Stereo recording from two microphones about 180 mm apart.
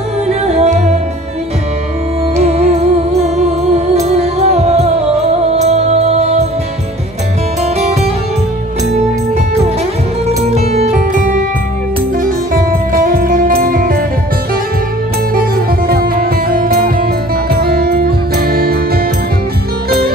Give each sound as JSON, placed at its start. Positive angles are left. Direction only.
{"t": 0.3, "sound": "music", "side_deg": -35}
{"t": 2.4, "sound": "music", "side_deg": -35}
{"t": 7.6, "sound": "music", "side_deg": -35}
{"t": 10.2, "sound": "music", "side_deg": -35}
{"t": 12.9, "sound": "music", "side_deg": -55}
{"t": 15.9, "sound": "music", "side_deg": -55}